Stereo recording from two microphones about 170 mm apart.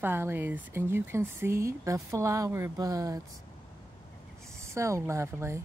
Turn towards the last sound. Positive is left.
turn(degrees=-15)  # may be behind; listen again after turning